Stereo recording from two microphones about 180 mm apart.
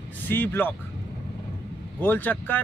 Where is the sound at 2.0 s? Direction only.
10° left (ahead or behind).